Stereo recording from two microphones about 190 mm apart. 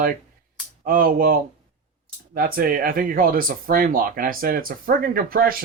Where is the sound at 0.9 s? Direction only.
50° right (ahead or behind).